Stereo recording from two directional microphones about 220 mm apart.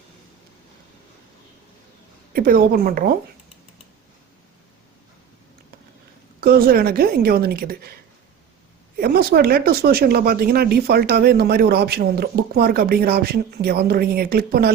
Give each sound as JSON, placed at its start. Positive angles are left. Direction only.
{"t": 2.3, "sound": "a woman's voice", "side_deg": -40}
{"t": 6.4, "sound": "speech", "side_deg": -45}
{"t": 9.0, "sound": "speech", "side_deg": -45}